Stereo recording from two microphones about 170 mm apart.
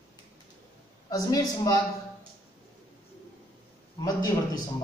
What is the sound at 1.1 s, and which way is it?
Speech, 20° left (ahead or behind).